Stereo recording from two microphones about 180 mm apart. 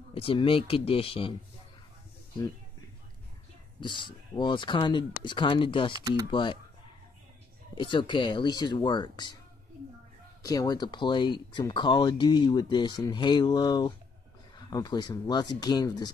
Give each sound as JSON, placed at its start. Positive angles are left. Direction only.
{"t": 0.1, "sound": "speech", "side_deg": 30}
{"t": 3.8, "sound": "speech", "side_deg": 25}
{"t": 5.9, "sound": "speech", "side_deg": -20}
{"t": 6.3, "sound": "speech", "side_deg": 30}
{"t": 7.7, "sound": "speech", "side_deg": 25}
{"t": 10.4, "sound": "speech", "side_deg": 20}